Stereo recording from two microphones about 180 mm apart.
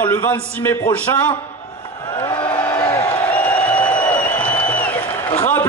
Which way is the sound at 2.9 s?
15° left (ahead or behind).